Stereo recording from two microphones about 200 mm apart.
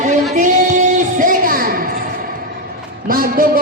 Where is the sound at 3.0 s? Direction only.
45° right (ahead or behind).